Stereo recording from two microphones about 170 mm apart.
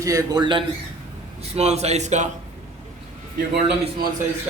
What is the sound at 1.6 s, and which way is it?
Speech, 40° right (ahead or behind).